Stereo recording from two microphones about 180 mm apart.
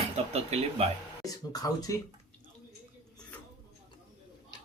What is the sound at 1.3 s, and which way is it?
Speech, 20° left (ahead or behind).